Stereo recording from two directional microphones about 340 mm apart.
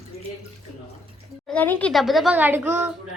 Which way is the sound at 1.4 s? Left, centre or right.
Centre.